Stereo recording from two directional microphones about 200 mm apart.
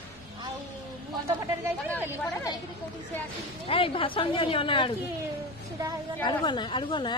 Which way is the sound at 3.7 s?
25° left (ahead or behind).